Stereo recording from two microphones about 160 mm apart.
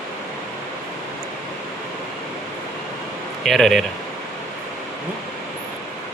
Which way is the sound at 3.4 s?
Centre (ahead or behind).